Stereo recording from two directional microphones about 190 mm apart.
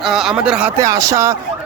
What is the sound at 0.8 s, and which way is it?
Speech, 15° right (ahead or behind).